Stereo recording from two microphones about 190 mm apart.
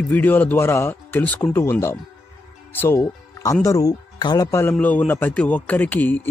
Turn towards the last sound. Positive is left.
turn(degrees=10)  # may be behind; listen again after turning